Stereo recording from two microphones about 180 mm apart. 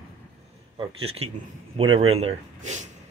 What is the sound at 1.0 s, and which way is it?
Speech, 35° right (ahead or behind).